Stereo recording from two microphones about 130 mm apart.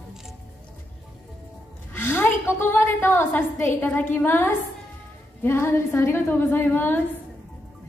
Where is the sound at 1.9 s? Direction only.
15° left (ahead or behind).